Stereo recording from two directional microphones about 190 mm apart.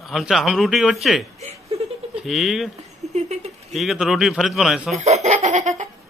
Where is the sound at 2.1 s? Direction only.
Centre (ahead or behind).